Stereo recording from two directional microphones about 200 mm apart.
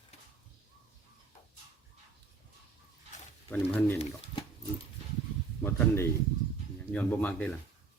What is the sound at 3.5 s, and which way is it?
Speech, 5° left (ahead or behind).